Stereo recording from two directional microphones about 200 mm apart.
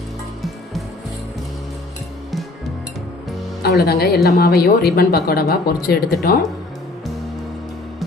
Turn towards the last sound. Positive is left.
turn(degrees=50)  # may be behind; listen again after turning